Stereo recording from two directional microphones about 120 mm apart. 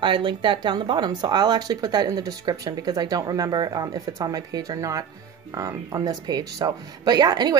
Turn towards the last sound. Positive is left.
turn(degrees=-35)  # may be behind; listen again after turning